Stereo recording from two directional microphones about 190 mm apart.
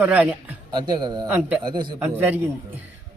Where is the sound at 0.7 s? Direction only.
25° right (ahead or behind).